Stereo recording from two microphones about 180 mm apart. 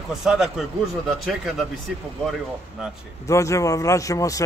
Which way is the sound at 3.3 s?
15° left (ahead or behind).